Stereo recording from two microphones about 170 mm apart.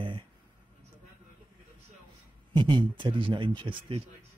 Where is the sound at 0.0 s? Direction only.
30° right (ahead or behind).